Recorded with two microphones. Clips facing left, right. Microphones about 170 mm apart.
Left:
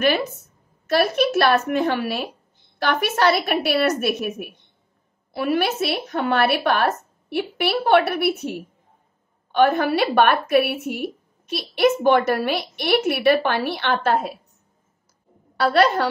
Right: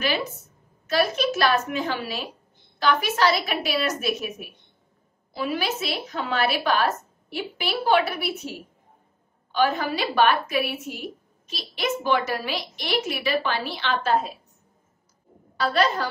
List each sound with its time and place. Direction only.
0.8 s a woman's voice: 60° left (ahead or behind)
15.5 s a woman's voice: 65° left (ahead or behind)